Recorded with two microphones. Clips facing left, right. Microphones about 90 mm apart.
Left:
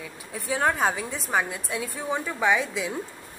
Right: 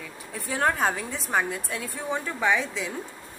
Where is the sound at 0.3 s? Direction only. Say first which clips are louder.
Left 1 dB; centre (ahead or behind).